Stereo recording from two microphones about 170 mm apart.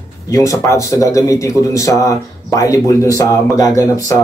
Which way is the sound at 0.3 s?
20° left (ahead or behind).